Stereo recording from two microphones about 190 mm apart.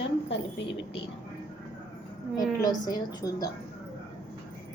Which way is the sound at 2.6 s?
20° left (ahead or behind).